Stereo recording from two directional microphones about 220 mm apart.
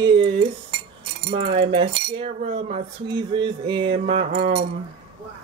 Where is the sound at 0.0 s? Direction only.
25° right (ahead or behind).